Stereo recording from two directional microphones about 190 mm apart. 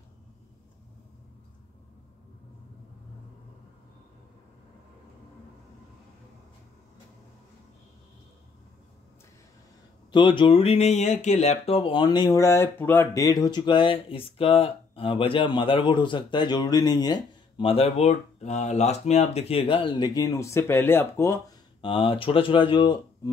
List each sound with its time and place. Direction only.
10.1 s speech: 25° left (ahead or behind)
21.8 s speech: 25° left (ahead or behind)